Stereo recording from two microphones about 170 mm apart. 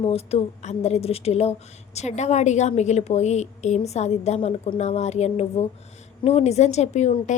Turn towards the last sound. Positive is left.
turn(degrees=40)  # may be behind; listen again after turning